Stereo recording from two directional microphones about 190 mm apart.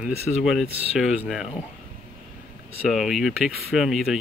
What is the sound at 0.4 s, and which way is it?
Speech, centre (ahead or behind).